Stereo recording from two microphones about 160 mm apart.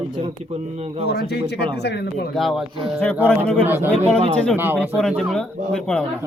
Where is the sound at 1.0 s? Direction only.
85° left.